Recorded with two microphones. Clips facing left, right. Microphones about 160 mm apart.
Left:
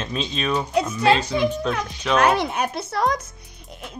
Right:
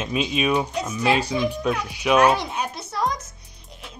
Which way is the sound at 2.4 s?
60° left (ahead or behind).